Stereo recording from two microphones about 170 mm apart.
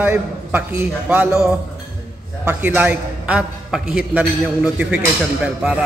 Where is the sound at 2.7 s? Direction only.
10° right (ahead or behind).